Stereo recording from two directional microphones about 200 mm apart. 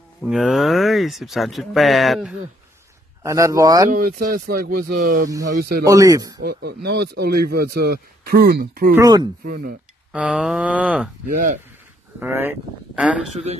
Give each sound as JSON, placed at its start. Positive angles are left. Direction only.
{"t": 0.2, "sound": "speech", "side_deg": -5}
{"t": 3.2, "sound": "speech", "side_deg": -15}
{"t": 3.9, "sound": "speech", "side_deg": -45}
{"t": 5.9, "sound": "speech", "side_deg": -15}
{"t": 6.4, "sound": "speech", "side_deg": -55}
{"t": 8.9, "sound": "speech", "side_deg": -20}
{"t": 9.4, "sound": "speech", "side_deg": -45}
{"t": 10.1, "sound": "speech", "side_deg": -5}
{"t": 12.2, "sound": "speech", "side_deg": -10}